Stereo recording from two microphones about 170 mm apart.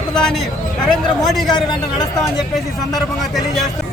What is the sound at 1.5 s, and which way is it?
Speech, 25° left (ahead or behind).